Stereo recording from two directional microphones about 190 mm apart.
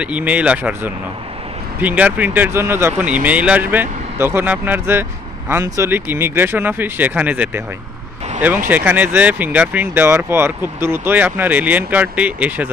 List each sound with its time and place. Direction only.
0.0 s speech: 5° right (ahead or behind)
8.6 s speech: 10° right (ahead or behind)